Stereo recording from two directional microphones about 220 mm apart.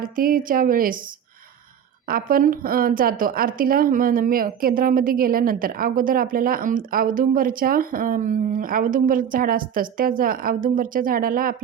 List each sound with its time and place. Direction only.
0.0 s a woman's voice: 40° right (ahead or behind)
2.0 s a woman's voice: 40° right (ahead or behind)